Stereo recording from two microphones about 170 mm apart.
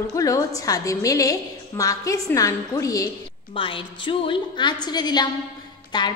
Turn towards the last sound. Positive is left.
turn(degrees=25)  # may be behind; listen again after turning